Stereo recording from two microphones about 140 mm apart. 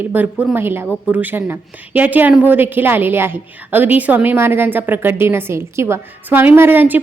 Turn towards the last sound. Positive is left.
turn(degrees=-15)  # may be behind; listen again after turning